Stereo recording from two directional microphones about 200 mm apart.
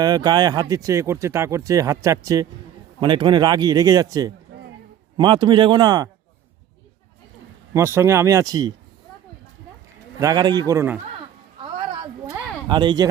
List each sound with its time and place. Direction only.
0.0 s speech: 20° right (ahead or behind)
4.5 s a sound: 60° right (ahead or behind)
5.1 s speech: 20° right (ahead or behind)
7.7 s speech: 10° right (ahead or behind)
10.2 s speech: 20° right (ahead or behind)
12.3 s a sound: 20° right (ahead or behind)